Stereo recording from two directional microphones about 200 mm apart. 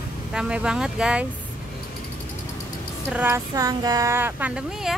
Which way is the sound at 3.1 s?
10° right (ahead or behind).